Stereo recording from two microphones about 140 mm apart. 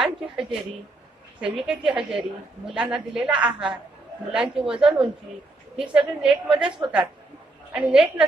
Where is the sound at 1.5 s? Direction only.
5° right (ahead or behind).